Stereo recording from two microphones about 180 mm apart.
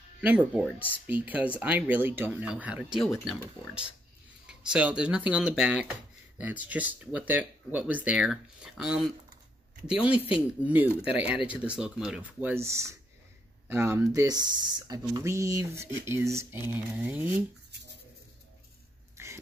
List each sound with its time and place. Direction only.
0.2 s speech: 10° right (ahead or behind)
19.2 s bird: 15° right (ahead or behind)